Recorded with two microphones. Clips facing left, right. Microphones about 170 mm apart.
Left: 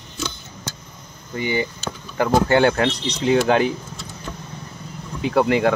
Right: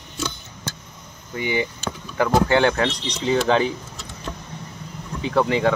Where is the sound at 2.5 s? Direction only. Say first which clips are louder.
Left 2 dB; 10° left (ahead or behind).